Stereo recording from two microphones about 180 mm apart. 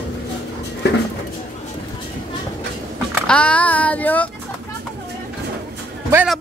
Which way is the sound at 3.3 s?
5° left (ahead or behind).